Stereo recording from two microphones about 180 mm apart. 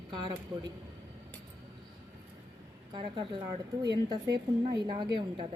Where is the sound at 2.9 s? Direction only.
25° right (ahead or behind).